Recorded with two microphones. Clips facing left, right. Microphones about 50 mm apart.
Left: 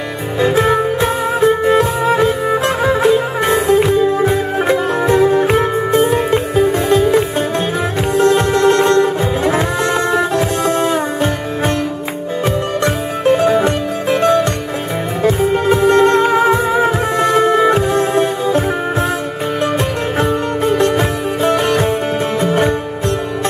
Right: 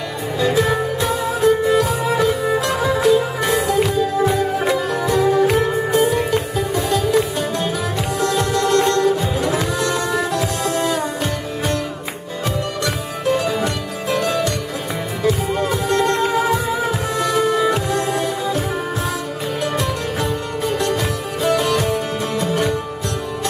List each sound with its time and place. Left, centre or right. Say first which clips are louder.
0.4 s music: left 5 dB; left
12.8 s music: left 7 dB; left
20.2 s music: left 7 dB; left